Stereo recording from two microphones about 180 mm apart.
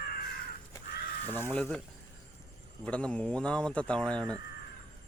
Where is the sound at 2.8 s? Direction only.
5° left (ahead or behind).